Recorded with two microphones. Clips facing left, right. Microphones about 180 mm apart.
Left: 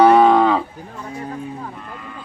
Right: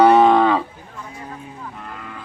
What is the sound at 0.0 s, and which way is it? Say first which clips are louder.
Cattle: left 1 dB; 5° left (ahead or behind).